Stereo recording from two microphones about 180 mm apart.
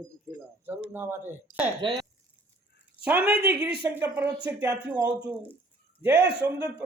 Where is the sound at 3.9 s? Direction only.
10° right (ahead or behind).